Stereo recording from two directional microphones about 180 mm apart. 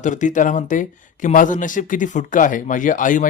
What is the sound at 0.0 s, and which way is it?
Speech, 45° left (ahead or behind).